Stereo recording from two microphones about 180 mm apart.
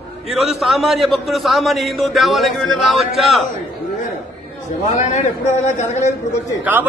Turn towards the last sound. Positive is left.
turn(degrees=-10)  # may be behind; listen again after turning